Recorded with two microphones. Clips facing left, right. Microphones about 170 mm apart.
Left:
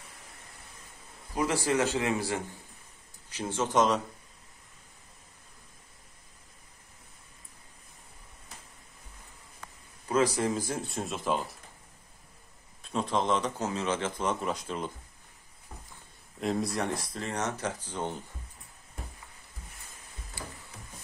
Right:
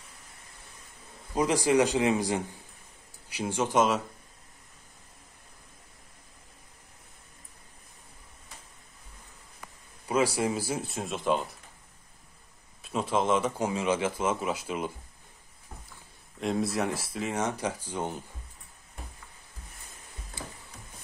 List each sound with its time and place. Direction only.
1.3 s a man's voice: 15° right (ahead or behind)
9.6 s speech: 10° right (ahead or behind)
12.8 s a man's voice: 5° right (ahead or behind)
16.3 s a man's voice: centre (ahead or behind)
20.4 s a sound: 20° right (ahead or behind)